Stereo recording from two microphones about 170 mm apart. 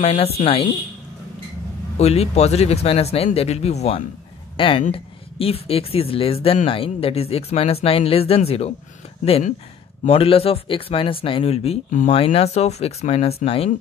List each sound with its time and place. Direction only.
0.0 s speech: 40° left (ahead or behind)
2.0 s speech: 40° left (ahead or behind)